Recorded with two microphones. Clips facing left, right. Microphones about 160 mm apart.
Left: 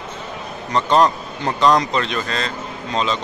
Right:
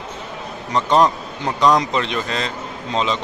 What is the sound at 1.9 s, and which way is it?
Speech, 15° right (ahead or behind).